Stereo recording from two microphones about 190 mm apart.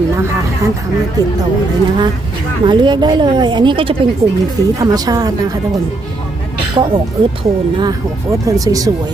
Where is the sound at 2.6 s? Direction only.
25° right (ahead or behind).